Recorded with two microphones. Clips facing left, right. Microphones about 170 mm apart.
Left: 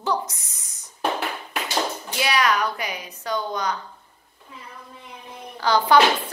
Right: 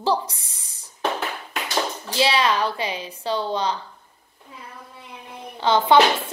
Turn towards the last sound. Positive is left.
turn(degrees=-25)  # may be behind; listen again after turning